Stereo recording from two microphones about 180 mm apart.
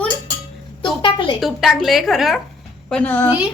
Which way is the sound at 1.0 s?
25° left (ahead or behind).